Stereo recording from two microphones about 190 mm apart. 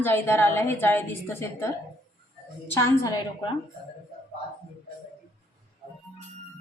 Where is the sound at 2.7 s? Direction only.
15° left (ahead or behind).